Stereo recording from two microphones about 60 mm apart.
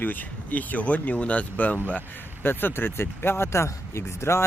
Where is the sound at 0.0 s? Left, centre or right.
Left.